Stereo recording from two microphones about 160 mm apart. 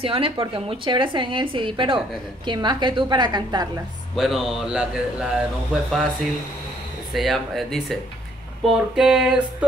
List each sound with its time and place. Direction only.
0.0 s a woman's voice: 35° right (ahead or behind)
4.1 s speech: centre (ahead or behind)
7.2 s speech: centre (ahead or behind)